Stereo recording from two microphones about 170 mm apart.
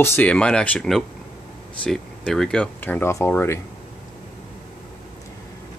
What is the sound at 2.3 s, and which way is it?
Speech, 5° left (ahead or behind).